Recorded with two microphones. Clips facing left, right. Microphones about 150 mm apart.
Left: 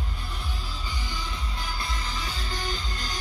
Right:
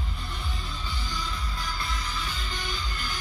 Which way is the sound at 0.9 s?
15° left (ahead or behind).